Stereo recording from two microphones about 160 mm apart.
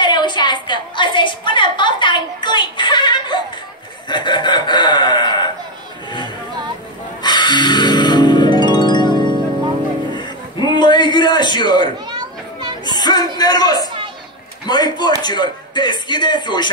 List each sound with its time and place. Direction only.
0.0 s a sound: 30° left (ahead or behind)
6.0 s music: 30° left (ahead or behind)
10.1 s a sound: 30° left (ahead or behind)
12.1 s children playing: 25° right (ahead or behind)
12.8 s music: 25° left (ahead or behind)
13.4 s a man's voice: 25° left (ahead or behind)